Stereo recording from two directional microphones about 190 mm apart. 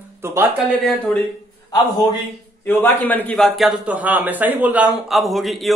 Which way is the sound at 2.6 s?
10° left (ahead or behind).